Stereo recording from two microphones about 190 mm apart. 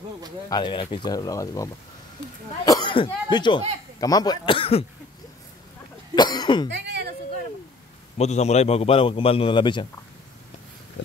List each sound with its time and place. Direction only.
0.5 s speech: 25° left (ahead or behind)
6.1 s speech: 20° left (ahead or behind)
6.7 s a sound: 60° right (ahead or behind)
8.2 s a man's voice: 35° left (ahead or behind)